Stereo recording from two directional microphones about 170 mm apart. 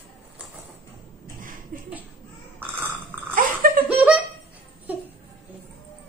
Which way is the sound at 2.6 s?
10° right (ahead or behind).